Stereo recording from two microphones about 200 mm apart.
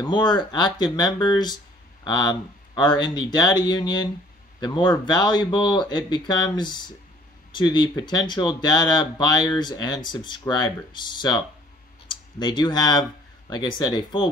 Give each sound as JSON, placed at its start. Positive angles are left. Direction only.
{"t": 0.0, "sound": "speech", "side_deg": 20}